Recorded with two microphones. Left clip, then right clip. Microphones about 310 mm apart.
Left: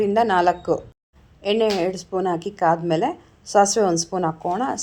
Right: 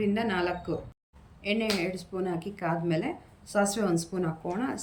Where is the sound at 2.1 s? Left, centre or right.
Left.